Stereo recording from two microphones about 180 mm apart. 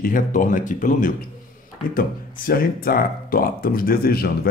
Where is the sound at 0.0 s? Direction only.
45° left (ahead or behind).